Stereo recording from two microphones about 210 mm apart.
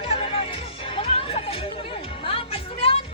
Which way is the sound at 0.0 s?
25° left (ahead or behind).